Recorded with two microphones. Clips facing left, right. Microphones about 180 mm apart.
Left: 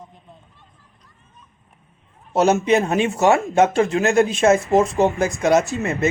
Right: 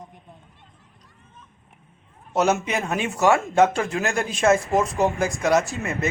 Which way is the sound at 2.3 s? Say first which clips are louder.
Left 6 dB; 30° left (ahead or behind).